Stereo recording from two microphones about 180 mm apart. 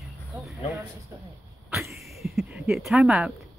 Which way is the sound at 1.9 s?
Centre (ahead or behind).